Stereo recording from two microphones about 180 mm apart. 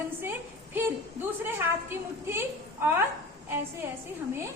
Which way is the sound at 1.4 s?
10° right (ahead or behind).